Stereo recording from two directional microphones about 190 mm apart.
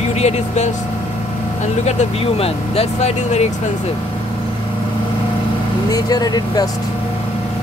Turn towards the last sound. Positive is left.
turn(degrees=20)  # may be behind; listen again after turning